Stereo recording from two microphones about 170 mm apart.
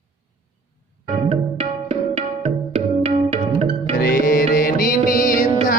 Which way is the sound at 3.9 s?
60° left (ahead or behind).